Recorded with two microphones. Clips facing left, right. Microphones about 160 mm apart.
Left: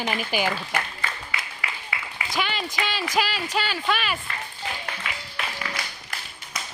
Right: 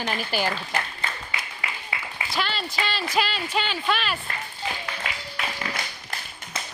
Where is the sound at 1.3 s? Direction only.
20° right (ahead or behind).